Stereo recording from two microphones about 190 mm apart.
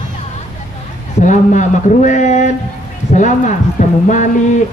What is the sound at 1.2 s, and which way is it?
A man's voice, 40° left (ahead or behind).